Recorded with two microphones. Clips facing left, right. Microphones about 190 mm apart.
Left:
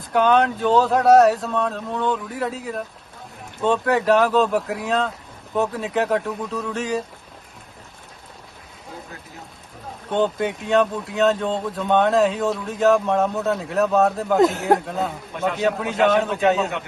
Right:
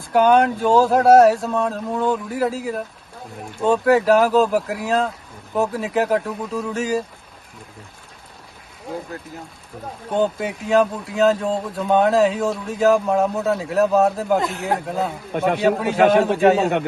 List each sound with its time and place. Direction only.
0.1 s speech: 5° right (ahead or behind)
10.1 s speech: centre (ahead or behind)
14.3 s speech: 40° left (ahead or behind)
14.8 s speech: 5° right (ahead or behind)
15.4 s a man's voice: 55° right (ahead or behind)